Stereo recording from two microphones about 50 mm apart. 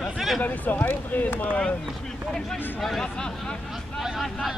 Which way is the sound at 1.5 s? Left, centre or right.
Left.